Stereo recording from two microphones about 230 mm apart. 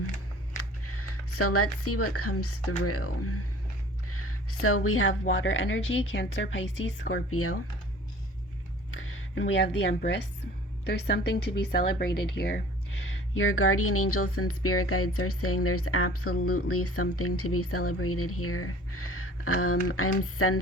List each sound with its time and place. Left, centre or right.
0.5 s speech: left
5.3 s speech: left
8.9 s speech: left
13.3 s speech: left